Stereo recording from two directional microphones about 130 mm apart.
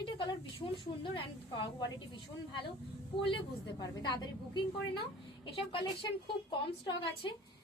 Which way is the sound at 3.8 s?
35° left (ahead or behind).